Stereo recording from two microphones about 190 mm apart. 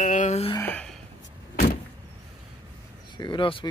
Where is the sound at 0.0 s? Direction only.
40° left (ahead or behind).